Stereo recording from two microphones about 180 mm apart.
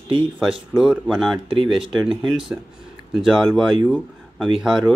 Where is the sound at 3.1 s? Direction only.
Centre (ahead or behind).